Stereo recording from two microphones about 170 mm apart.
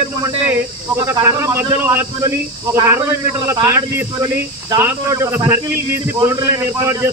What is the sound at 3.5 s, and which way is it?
A man's voice, 20° right (ahead or behind).